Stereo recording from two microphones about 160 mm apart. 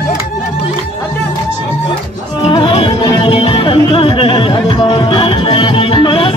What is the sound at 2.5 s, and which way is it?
Music, 35° left (ahead or behind).